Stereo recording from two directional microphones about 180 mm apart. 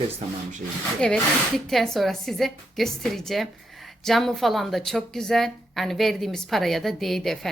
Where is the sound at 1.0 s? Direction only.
5° left (ahead or behind).